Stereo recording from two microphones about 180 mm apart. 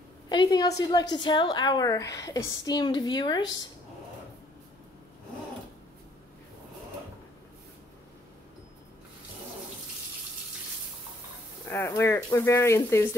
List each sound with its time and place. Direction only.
0.3 s a woman's voice: 25° left (ahead or behind)
11.6 s speech: 10° left (ahead or behind)